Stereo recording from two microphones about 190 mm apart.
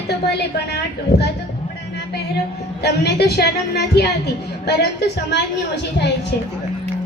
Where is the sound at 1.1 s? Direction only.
60° left (ahead or behind).